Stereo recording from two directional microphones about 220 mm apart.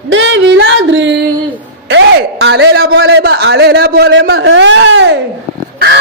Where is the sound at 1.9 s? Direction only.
55° right (ahead or behind).